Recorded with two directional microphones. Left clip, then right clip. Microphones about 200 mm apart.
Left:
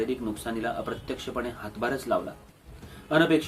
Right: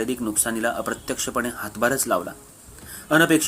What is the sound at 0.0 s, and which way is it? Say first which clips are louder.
Speech: right 4 dB; 45° right (ahead or behind).